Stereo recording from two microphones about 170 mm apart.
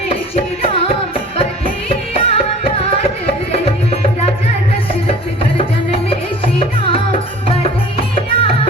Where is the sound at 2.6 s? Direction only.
35° left (ahead or behind).